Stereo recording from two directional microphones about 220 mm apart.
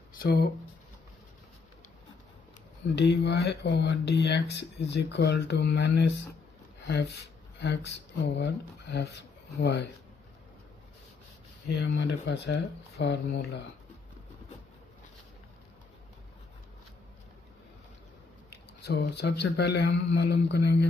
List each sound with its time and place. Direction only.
0.1 s speech: 45° left (ahead or behind)
3.0 s speech: 50° left (ahead or behind)
7.5 s speech: 50° left (ahead or behind)
11.7 s speech: 50° left (ahead or behind)
18.8 s speech: 50° left (ahead or behind)